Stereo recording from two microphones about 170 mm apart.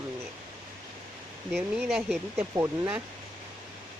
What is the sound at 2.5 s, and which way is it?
Speech, 20° right (ahead or behind).